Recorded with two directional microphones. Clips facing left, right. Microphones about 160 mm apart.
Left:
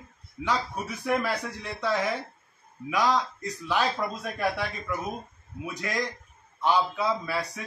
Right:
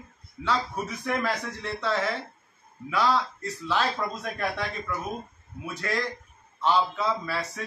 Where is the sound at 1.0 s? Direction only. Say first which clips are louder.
Left 2 dB; 10° left (ahead or behind).